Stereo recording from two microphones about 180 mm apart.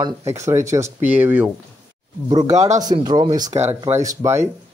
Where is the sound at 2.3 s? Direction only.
20° right (ahead or behind).